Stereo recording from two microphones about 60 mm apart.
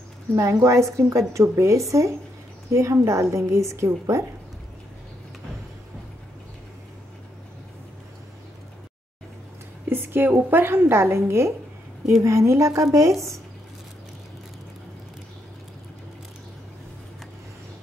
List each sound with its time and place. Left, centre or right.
0.4 s a woman's voice: right
9.8 s a woman's voice: right